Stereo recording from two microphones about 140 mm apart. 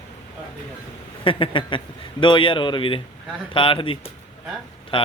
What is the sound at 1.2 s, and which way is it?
A man's voice, 40° left (ahead or behind).